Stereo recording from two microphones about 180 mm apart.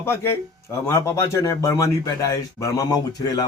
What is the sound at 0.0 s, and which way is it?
Speech, 15° left (ahead or behind).